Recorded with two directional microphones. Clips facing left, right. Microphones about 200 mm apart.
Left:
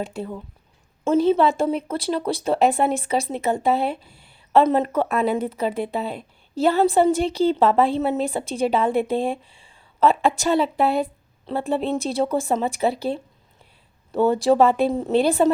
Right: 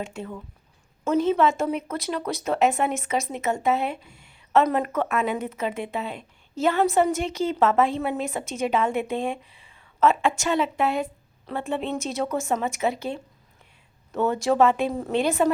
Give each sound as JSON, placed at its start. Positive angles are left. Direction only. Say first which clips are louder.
{"t": 0.0, "sound": "speech", "louder": "left 4 dB", "side_deg": 35}